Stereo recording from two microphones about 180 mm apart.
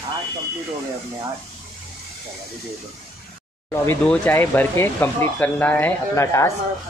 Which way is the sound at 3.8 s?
10° left (ahead or behind).